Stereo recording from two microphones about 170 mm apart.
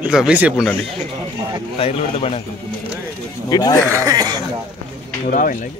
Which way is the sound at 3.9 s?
20° right (ahead or behind).